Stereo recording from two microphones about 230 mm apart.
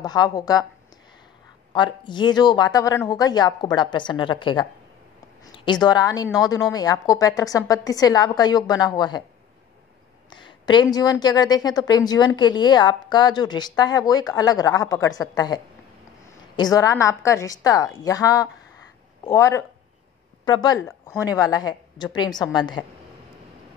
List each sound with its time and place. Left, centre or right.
0.0 s a woman's voice: centre
1.7 s a woman's voice: centre
10.3 s a woman's voice: centre